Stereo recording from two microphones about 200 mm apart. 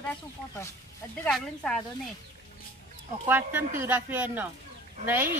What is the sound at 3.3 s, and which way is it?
Speech, 10° right (ahead or behind).